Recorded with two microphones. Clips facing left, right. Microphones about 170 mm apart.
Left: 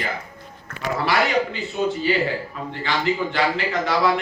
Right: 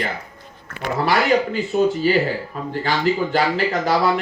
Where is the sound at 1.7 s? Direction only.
45° right (ahead or behind).